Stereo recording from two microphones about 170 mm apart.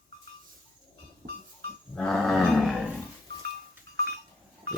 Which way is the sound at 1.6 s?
65° right (ahead or behind).